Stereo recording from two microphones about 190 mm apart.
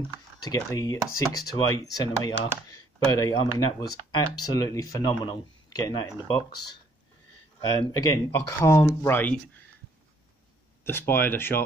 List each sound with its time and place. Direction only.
0.4 s speech: 15° left (ahead or behind)
7.6 s speech: 20° left (ahead or behind)
10.8 s speech: 10° left (ahead or behind)